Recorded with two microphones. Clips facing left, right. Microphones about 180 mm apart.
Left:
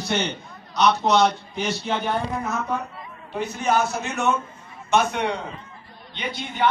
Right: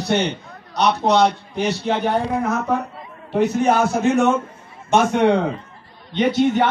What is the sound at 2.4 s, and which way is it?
Speech, 55° right (ahead or behind).